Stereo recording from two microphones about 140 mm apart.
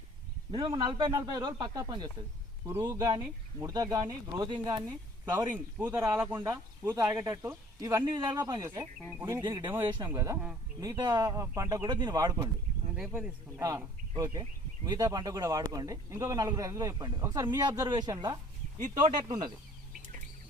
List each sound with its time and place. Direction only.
0.5 s speech: 35° right (ahead or behind)
4.4 s speech: 35° right (ahead or behind)
5.5 s speech: 15° right (ahead or behind)
9.4 s speech: 30° right (ahead or behind)
13.0 s speech: 5° right (ahead or behind)
13.6 s speech: 25° right (ahead or behind)
18.8 s speech: 55° right (ahead or behind)